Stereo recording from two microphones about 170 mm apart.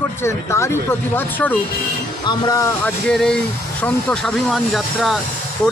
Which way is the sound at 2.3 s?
25° left (ahead or behind).